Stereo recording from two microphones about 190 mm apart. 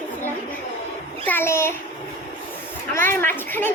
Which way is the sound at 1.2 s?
10° left (ahead or behind).